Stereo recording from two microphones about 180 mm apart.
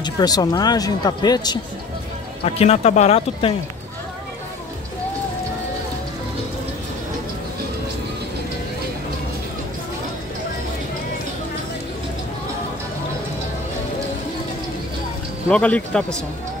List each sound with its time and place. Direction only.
0.0 s speech: 20° left (ahead or behind)
2.4 s speech: 35° left (ahead or behind)
15.5 s speech: 5° left (ahead or behind)